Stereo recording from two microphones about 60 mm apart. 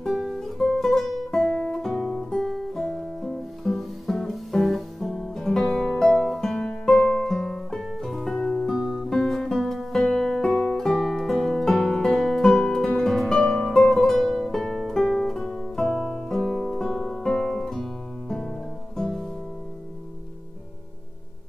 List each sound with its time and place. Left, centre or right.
0.0 s music: centre
13.4 s music: centre
13.7 s music: centre
15.4 s guitar: centre
18.9 s music: centre